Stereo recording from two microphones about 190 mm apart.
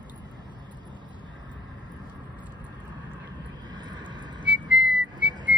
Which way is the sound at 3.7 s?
25° right (ahead or behind).